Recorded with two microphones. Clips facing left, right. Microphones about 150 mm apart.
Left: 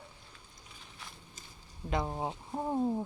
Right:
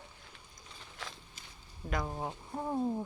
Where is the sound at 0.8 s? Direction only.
90° right.